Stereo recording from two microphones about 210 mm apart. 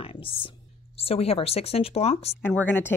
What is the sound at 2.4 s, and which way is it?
Speech, 5° left (ahead or behind).